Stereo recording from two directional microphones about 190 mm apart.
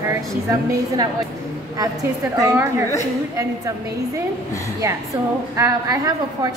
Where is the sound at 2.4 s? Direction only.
20° right (ahead or behind).